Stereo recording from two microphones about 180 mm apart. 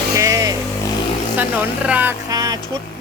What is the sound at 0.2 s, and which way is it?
Vehicle, 20° right (ahead or behind).